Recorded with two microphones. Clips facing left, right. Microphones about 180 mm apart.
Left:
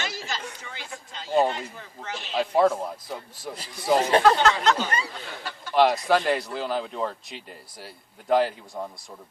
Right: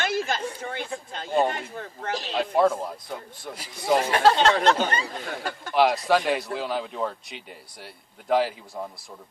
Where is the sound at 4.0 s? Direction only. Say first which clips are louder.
Left 4 dB; 30° left (ahead or behind).